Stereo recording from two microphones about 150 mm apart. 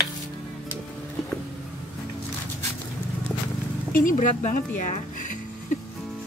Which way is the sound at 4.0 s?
60° left (ahead or behind).